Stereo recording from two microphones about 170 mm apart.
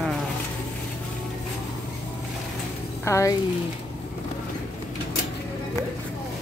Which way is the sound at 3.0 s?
15° left (ahead or behind).